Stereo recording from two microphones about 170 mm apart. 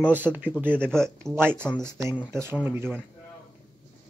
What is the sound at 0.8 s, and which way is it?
Speech, 5° left (ahead or behind).